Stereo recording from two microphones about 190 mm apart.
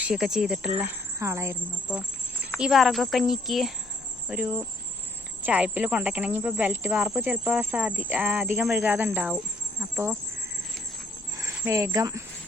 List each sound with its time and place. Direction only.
0.0 s speech: 5° right (ahead or behind)
11.3 s speech: 15° right (ahead or behind)